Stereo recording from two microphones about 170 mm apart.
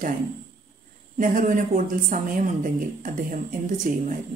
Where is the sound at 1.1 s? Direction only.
50° right (ahead or behind).